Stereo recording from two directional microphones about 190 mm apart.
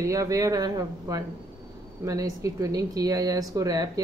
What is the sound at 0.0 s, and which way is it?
A woman's voice, 15° right (ahead or behind).